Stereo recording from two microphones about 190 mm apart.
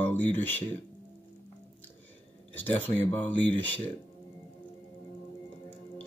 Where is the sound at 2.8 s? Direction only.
10° left (ahead or behind).